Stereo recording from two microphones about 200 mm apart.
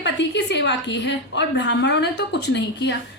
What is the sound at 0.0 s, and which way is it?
A woman's voice, 60° left (ahead or behind).